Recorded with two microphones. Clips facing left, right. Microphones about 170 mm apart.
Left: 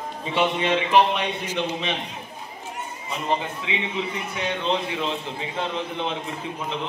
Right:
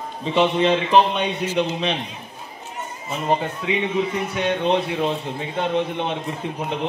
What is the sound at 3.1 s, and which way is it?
A man's voice, 45° right (ahead or behind).